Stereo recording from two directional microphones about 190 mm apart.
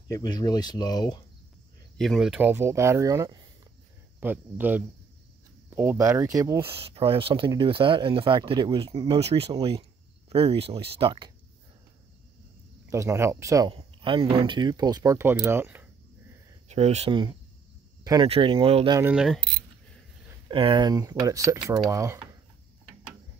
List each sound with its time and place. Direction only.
0.1 s speech: 20° left (ahead or behind)
2.0 s speech: centre (ahead or behind); by 6.7 s 15° right (ahead or behind)
6.7 s speech: 30° right (ahead or behind)
12.9 s speech: 15° right (ahead or behind)
13.7 s speech: 25° right (ahead or behind); by 15.9 s 10° right (ahead or behind)
16.6 s speech: 35° right (ahead or behind)
18.9 s mechanisms: 5° right (ahead or behind)
20.4 s speech: 25° right (ahead or behind)